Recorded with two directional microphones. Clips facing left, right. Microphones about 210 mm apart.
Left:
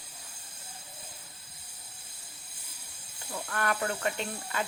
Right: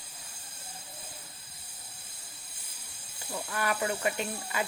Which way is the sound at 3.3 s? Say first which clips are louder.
Even; 5° right (ahead or behind).